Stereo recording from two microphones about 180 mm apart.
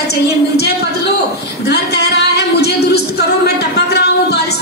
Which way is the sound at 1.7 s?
65° left (ahead or behind).